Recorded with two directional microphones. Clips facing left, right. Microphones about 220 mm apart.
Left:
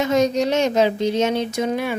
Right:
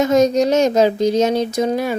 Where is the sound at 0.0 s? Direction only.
45° right (ahead or behind).